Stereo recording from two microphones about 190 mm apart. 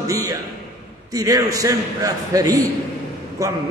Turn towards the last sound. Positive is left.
turn(degrees=-15)  # may be behind; listen again after turning